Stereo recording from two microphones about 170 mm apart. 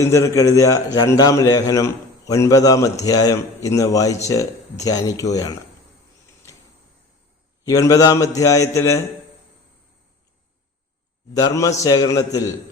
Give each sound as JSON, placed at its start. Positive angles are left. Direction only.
{"t": 0.0, "sound": "a man's voice", "side_deg": 15}
{"t": 6.4, "sound": "a sound", "side_deg": 15}
{"t": 7.6, "sound": "a man's voice", "side_deg": 20}
{"t": 11.3, "sound": "speech", "side_deg": 20}